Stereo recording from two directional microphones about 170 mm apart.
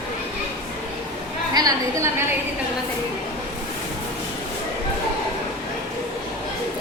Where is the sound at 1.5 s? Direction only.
20° right (ahead or behind).